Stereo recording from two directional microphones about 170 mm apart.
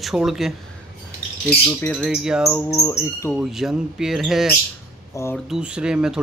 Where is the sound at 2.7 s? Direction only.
15° left (ahead or behind).